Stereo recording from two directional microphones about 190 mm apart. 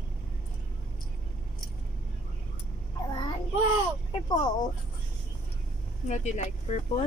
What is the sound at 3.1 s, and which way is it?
Child singing, 25° left (ahead or behind).